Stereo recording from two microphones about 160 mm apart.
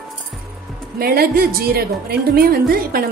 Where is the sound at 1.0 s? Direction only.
70° right (ahead or behind).